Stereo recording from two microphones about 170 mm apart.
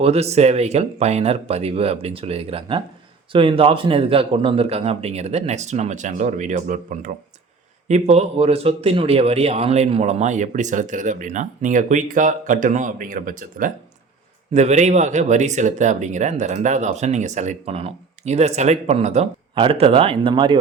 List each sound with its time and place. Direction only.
0.0 s a man's voice: 40° right (ahead or behind); by 13.7 s 55° right (ahead or behind)
14.5 s speech: 40° right (ahead or behind)